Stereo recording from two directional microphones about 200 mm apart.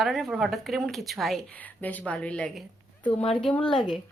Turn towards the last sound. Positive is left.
turn(degrees=25)  # may be behind; listen again after turning